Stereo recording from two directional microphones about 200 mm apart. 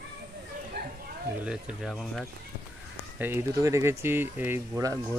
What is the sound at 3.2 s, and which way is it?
Speech, 15° right (ahead or behind).